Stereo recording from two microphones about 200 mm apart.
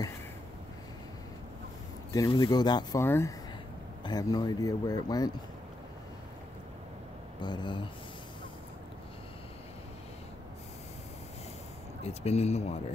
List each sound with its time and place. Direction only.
2.1 s speech: 20° left (ahead or behind)
7.4 s speech: 20° left (ahead or behind)
12.0 s speech: 35° left (ahead or behind)